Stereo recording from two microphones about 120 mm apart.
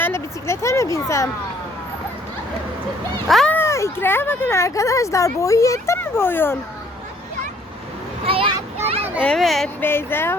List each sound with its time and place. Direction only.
0.0 s speech: 20° left (ahead or behind)
3.2 s speech: centre (ahead or behind)
3.5 s speech: 20° left (ahead or behind)
8.2 s a sound: 50° right (ahead or behind)
9.2 s speech: 5° left (ahead or behind)
9.8 s speech: 20° left (ahead or behind)